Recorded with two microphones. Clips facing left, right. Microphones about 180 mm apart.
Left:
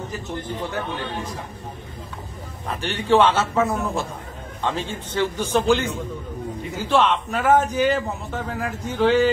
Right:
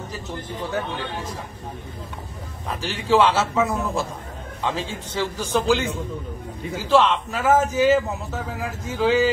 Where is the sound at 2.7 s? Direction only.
Centre (ahead or behind).